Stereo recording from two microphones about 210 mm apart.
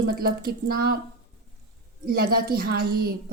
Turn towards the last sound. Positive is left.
turn(degrees=-50)  # may be behind; listen again after turning